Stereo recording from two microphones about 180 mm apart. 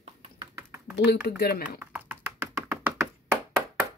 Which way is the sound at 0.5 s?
15° right (ahead or behind).